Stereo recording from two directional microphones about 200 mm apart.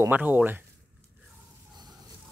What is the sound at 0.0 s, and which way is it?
Speech, 10° right (ahead or behind).